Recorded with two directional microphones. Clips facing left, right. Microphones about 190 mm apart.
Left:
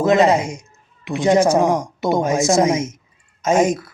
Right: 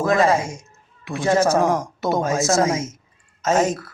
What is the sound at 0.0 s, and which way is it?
Speech, 20° left (ahead or behind).